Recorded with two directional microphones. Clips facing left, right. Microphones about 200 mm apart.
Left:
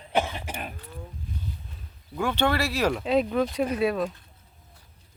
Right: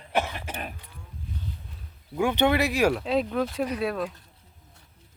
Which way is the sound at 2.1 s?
15° right (ahead or behind).